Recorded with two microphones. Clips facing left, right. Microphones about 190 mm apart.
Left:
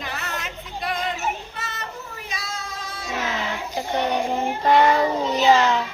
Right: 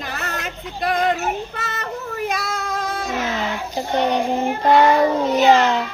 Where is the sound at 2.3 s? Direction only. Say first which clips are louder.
Right 9 dB; 50° right (ahead or behind).